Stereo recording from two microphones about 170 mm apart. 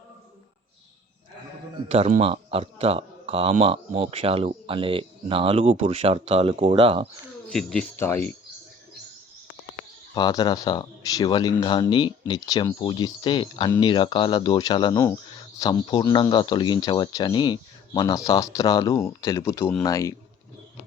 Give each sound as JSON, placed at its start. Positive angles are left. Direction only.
{"t": 1.9, "sound": "speech", "side_deg": -45}
{"t": 7.5, "sound": "speech", "side_deg": 5}
{"t": 10.2, "sound": "speech", "side_deg": 25}